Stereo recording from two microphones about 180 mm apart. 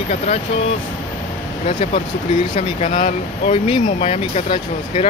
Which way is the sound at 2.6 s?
35° left (ahead or behind).